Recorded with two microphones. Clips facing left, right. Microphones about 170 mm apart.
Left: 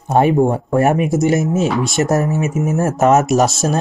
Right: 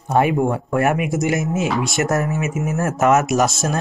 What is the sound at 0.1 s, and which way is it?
Speech, 30° left (ahead or behind).